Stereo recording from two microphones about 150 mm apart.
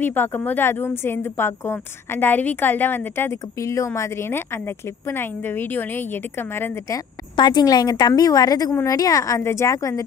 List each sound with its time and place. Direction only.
0.0 s speech: 15° left (ahead or behind)
7.3 s a woman's voice: 30° left (ahead or behind)